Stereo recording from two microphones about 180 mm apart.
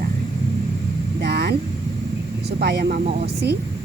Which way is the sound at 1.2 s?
65° right (ahead or behind).